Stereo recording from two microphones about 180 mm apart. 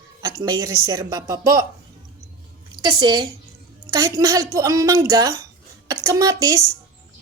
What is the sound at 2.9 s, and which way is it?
A woman's voice, 25° right (ahead or behind).